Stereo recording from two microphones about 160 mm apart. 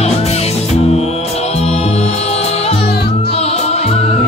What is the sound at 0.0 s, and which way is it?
Music, 40° left (ahead or behind).